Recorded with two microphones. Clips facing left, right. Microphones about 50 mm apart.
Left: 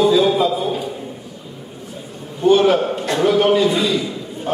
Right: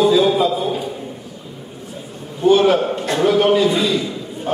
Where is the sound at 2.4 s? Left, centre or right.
Centre.